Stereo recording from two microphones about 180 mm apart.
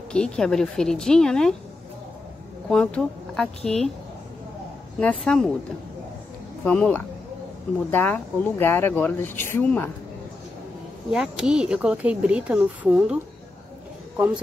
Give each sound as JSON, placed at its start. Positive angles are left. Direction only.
{"t": 0.1, "sound": "speech", "side_deg": 5}
{"t": 2.7, "sound": "speech", "side_deg": 5}
{"t": 5.0, "sound": "speech", "side_deg": 5}
{"t": 6.6, "sound": "speech", "side_deg": 5}
{"t": 11.1, "sound": "speech", "side_deg": -5}